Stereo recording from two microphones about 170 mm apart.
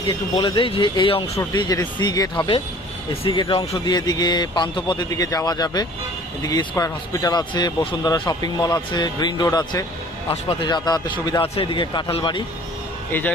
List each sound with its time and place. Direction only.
0.3 s speech: 30° left (ahead or behind)